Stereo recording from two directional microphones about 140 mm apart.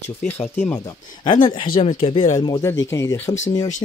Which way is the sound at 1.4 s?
40° left (ahead or behind).